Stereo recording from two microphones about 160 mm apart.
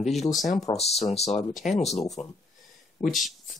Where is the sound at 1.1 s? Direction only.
40° left (ahead or behind).